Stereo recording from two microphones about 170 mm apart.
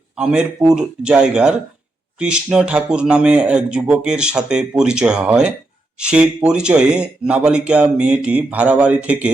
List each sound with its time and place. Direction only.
0.2 s speech: 5° right (ahead or behind)